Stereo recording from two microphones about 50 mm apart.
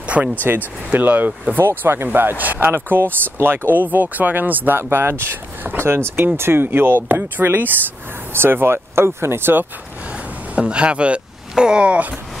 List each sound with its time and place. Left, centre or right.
0.0 s vehicle: right
0.9 s speech: right
2.0 s speech: right
2.7 s speech: right
4.7 s speech: right
5.9 s speech: right
8.3 s speech: right
10.5 s speech: right